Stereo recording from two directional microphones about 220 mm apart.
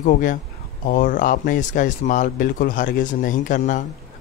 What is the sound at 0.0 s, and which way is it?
Speech, 35° left (ahead or behind).